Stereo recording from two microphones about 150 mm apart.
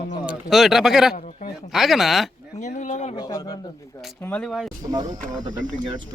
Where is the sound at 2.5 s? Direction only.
55° left (ahead or behind).